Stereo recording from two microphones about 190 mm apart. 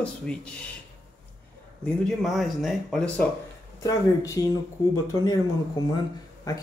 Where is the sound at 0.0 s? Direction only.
5° left (ahead or behind).